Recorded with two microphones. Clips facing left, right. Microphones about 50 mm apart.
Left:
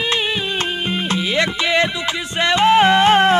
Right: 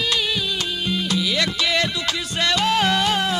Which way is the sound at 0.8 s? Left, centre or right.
Left.